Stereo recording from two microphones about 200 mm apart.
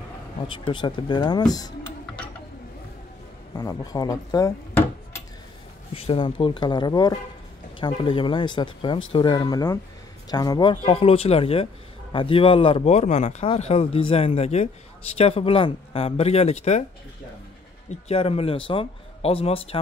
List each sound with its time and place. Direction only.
0.5 s speech: 25° left (ahead or behind)
3.5 s speech: 20° left (ahead or behind)
5.9 s speech: 25° left (ahead or behind)
17.8 s speech: 30° left (ahead or behind)